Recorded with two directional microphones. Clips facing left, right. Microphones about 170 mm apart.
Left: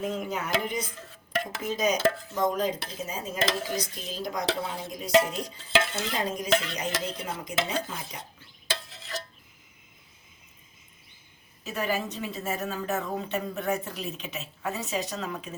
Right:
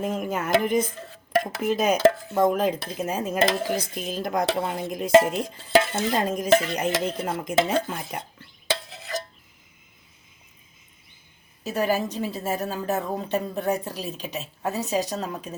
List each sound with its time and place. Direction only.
0.0 s speech: 50° right (ahead or behind)
1.5 s dishes: 55° right (ahead or behind)
11.6 s speech: 40° right (ahead or behind)